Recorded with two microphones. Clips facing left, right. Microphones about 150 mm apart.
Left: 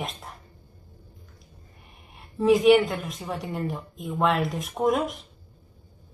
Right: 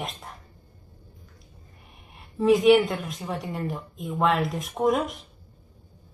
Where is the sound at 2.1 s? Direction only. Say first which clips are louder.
Even; centre (ahead or behind).